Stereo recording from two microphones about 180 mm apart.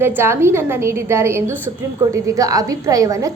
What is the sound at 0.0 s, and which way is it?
A woman's voice, 10° right (ahead or behind).